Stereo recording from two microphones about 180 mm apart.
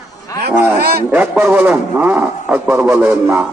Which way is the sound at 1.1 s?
10° right (ahead or behind).